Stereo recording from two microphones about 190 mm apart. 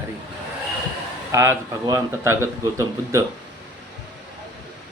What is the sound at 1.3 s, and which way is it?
Speech, 15° right (ahead or behind).